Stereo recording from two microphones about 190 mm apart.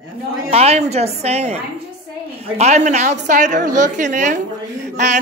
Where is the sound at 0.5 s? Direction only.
35° right (ahead or behind).